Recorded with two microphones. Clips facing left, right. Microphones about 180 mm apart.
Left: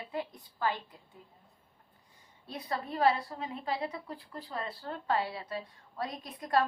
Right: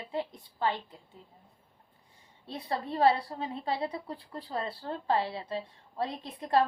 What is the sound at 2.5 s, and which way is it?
A woman's voice, 30° right (ahead or behind).